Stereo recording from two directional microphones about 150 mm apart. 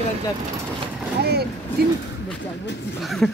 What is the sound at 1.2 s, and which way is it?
Vehicle, 90° right.